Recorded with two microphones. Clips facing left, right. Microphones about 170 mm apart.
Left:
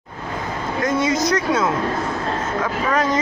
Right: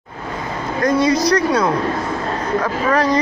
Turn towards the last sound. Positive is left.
turn(degrees=20)  # may be behind; listen again after turning